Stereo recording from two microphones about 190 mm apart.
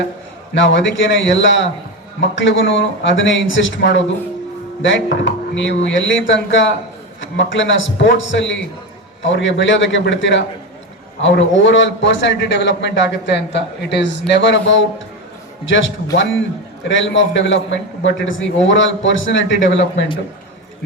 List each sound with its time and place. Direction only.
0.5 s a man's voice: 75° left (ahead or behind)
15.6 s a man's voice: 85° left
16.9 s a man's voice: 75° left (ahead or behind)